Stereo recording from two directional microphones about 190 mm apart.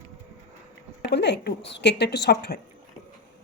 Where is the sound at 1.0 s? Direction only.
65° left (ahead or behind).